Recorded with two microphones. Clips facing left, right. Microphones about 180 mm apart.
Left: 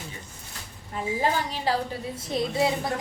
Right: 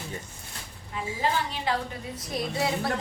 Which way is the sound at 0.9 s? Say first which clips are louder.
Left 2 dB; 40° left (ahead or behind).